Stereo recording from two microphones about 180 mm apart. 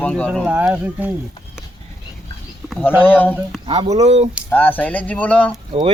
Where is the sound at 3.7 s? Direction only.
30° right (ahead or behind).